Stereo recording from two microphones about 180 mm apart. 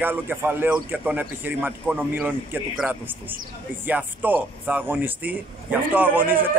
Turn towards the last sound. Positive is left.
turn(degrees=-10)  # may be behind; listen again after turning